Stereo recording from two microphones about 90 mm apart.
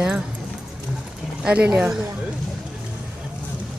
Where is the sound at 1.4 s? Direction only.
10° right (ahead or behind).